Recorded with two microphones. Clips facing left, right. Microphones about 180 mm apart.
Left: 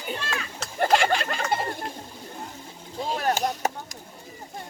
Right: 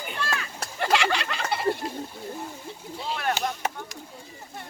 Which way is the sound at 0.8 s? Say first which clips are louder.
Left 3 dB; 45° left (ahead or behind).